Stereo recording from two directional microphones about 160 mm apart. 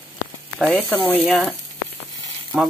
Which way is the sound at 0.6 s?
5° left (ahead or behind).